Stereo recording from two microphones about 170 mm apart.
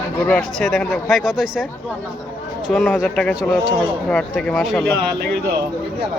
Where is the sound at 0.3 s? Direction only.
5° left (ahead or behind).